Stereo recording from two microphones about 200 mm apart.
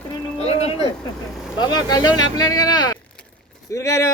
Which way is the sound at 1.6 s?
20° left (ahead or behind).